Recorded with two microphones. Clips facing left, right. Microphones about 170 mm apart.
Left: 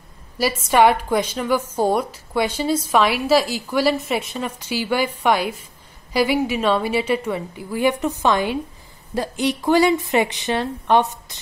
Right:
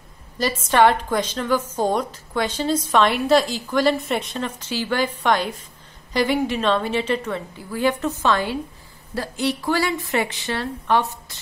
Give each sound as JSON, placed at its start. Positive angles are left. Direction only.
{"t": 0.7, "sound": "a woman's voice", "side_deg": 10}